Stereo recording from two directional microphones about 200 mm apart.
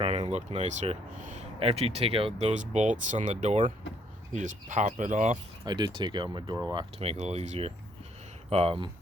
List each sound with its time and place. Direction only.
0.0 s speech: 30° right (ahead or behind)
5.6 s speech: 20° right (ahead or behind)